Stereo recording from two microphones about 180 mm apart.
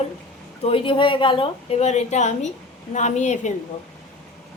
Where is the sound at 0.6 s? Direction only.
30° left (ahead or behind).